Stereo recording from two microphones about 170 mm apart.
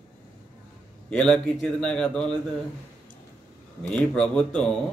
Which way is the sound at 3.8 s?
5° left (ahead or behind).